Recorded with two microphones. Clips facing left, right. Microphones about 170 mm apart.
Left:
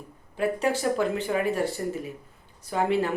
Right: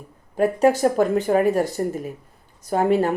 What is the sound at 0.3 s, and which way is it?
A woman's voice, 45° right (ahead or behind).